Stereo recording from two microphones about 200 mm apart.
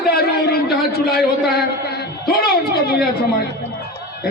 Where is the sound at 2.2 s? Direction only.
50° left (ahead or behind).